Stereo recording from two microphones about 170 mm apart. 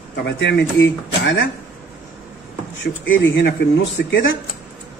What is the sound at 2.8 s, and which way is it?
Speech, 90° left.